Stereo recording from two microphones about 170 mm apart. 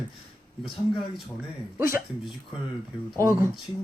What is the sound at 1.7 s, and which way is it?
Speech, 15° right (ahead or behind).